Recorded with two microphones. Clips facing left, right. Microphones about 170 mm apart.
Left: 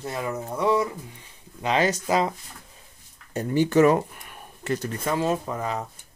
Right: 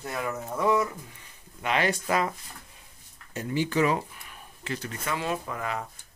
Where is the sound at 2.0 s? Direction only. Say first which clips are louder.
Left 4 dB; 20° left (ahead or behind).